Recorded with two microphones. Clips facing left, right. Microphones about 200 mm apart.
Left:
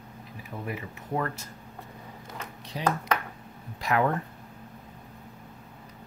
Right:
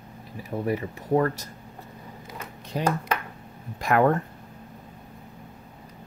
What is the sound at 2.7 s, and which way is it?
Speech, 50° right (ahead or behind).